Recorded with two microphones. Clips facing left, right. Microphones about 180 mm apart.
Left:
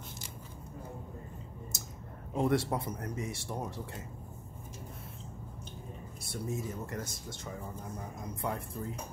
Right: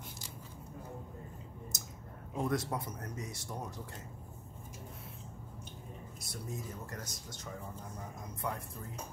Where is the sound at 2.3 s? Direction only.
30° left (ahead or behind).